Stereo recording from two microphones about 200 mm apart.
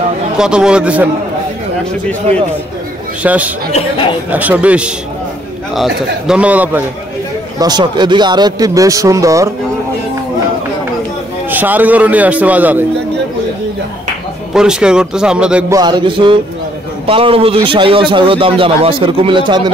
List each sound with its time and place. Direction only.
0.4 s speech: 5° right (ahead or behind)
3.2 s a man's voice: 5° right (ahead or behind)
6.2 s a man's voice: 5° right (ahead or behind)
7.5 s a man's voice: 20° right (ahead or behind)
11.4 s a man's voice: 10° right (ahead or behind)
14.5 s speech: 5° right (ahead or behind)
15.7 s a man's voice: 20° right (ahead or behind)